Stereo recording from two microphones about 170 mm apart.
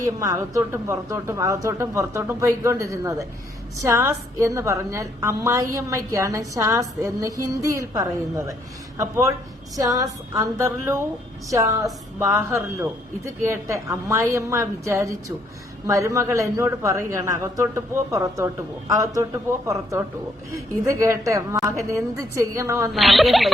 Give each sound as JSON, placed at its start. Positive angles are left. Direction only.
{"t": 0.0, "sound": "a woman's voice", "side_deg": -20}
{"t": 22.9, "sound": "speech", "side_deg": 0}